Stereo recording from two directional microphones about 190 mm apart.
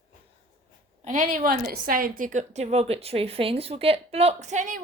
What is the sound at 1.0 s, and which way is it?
A woman's voice, 40° right (ahead or behind).